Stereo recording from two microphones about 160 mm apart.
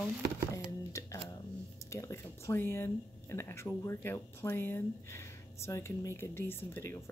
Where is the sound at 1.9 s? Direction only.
20° left (ahead or behind).